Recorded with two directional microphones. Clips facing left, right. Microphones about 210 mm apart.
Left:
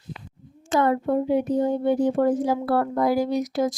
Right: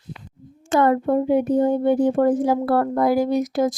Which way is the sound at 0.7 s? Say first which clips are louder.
Right 3 dB; 55° right (ahead or behind).